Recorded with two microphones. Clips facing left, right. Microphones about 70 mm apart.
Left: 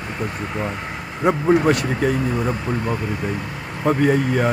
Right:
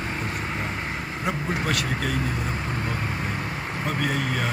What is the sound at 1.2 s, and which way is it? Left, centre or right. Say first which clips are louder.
Speech: left 12 dB; left.